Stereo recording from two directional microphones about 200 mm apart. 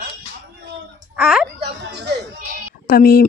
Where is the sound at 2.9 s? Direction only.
50° left (ahead or behind).